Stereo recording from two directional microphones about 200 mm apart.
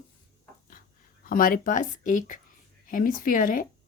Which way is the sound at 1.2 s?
45° left (ahead or behind).